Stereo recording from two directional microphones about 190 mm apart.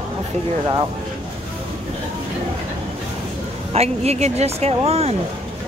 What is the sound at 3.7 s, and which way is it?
Speech, 35° right (ahead or behind).